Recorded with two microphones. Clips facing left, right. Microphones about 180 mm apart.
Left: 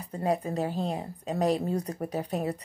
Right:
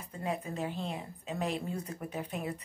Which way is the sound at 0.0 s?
40° left (ahead or behind).